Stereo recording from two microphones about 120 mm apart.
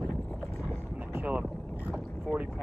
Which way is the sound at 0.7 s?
20° right (ahead or behind).